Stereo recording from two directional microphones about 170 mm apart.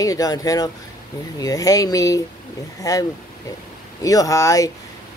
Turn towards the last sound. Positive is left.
turn(degrees=20)  # may be behind; listen again after turning